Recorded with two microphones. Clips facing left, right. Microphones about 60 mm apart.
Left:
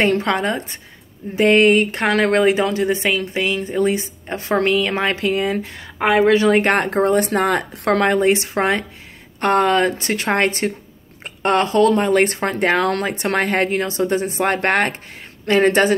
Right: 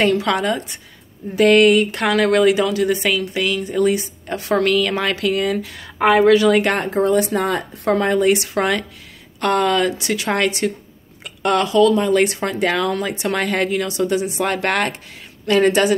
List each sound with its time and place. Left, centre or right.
0.0 s a woman's voice: left
8.2 s a woman's voice: left